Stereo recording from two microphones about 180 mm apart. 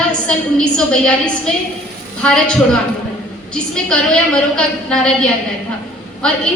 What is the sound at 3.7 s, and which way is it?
A woman's voice, 5° left (ahead or behind).